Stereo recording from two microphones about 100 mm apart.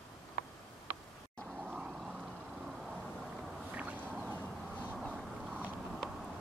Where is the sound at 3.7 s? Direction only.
15° right (ahead or behind).